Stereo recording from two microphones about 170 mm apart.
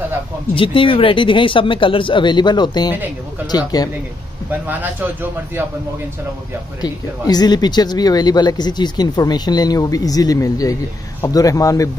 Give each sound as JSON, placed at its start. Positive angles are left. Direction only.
{"t": 0.6, "sound": "speech", "side_deg": 30}
{"t": 4.5, "sound": "a man's voice", "side_deg": -10}
{"t": 6.8, "sound": "speech", "side_deg": 25}